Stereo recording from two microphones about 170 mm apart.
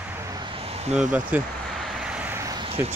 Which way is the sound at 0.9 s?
5° right (ahead or behind).